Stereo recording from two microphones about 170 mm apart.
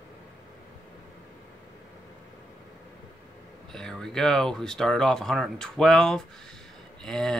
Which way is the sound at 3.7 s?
5° left (ahead or behind).